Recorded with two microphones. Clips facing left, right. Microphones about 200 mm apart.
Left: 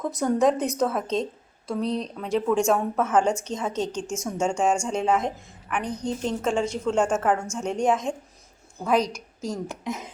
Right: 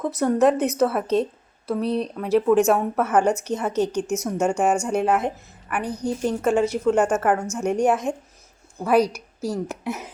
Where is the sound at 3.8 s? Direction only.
60° right (ahead or behind).